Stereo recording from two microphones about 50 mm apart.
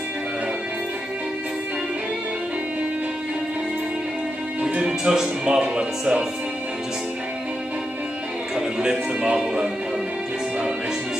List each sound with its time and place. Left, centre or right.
4.6 s speech: centre
9.2 s speech: centre